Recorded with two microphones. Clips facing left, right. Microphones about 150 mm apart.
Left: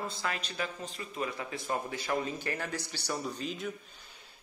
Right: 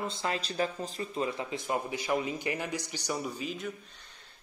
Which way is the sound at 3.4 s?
Centre (ahead or behind).